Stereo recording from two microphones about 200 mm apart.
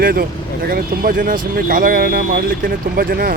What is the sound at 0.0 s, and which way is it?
Speech, 50° right (ahead or behind).